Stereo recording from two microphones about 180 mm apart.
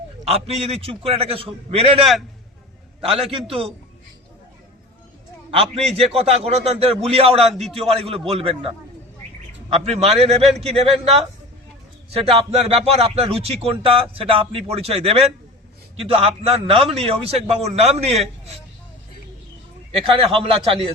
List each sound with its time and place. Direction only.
0.6 s a man's voice: 30° right (ahead or behind)
5.5 s a man's voice: 35° right (ahead or behind)
7.4 s a man's voice: centre (ahead or behind)
7.9 s a man's voice: 30° right (ahead or behind)
9.7 s a man's voice: 35° right (ahead or behind)
12.1 s a man's voice: 35° right (ahead or behind)
20.0 s a man's voice: 30° right (ahead or behind)